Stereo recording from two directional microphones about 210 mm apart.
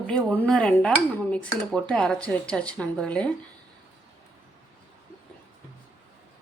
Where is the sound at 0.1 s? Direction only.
5° left (ahead or behind).